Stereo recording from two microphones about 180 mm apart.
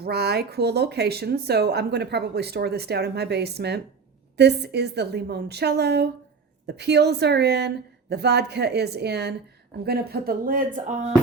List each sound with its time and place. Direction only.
0.0 s a woman's voice: 65° right (ahead or behind); by 10.9 s 45° right (ahead or behind)